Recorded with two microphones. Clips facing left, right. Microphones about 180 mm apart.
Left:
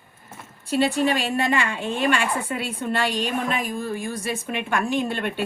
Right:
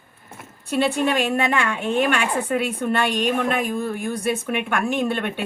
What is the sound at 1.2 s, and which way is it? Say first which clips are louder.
A woman's voice: right 2 dB; 60° right (ahead or behind).